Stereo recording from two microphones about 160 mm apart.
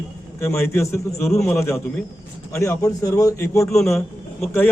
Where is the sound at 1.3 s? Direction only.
5° left (ahead or behind).